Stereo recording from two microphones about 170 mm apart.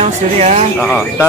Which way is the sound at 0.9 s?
5° right (ahead or behind).